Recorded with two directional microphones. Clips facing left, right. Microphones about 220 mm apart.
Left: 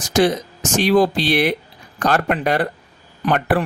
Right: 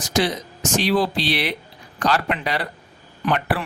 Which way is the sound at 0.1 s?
50° left (ahead or behind).